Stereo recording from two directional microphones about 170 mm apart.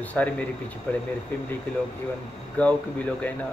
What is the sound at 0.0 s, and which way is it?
Speech, 10° left (ahead or behind).